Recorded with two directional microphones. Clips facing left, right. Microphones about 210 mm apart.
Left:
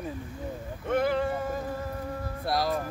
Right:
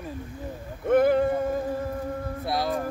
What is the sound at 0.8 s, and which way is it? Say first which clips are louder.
Boat: right 6 dB; 50° right (ahead or behind).